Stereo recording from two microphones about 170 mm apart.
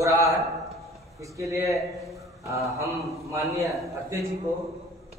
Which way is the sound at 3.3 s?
20° right (ahead or behind).